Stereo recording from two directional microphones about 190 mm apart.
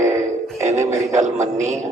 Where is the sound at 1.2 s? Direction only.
40° right (ahead or behind).